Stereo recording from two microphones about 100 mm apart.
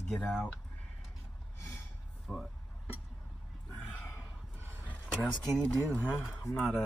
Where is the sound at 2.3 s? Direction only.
20° left (ahead or behind).